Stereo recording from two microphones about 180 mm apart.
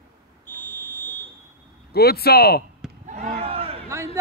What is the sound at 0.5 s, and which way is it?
Fire alarm, 10° left (ahead or behind).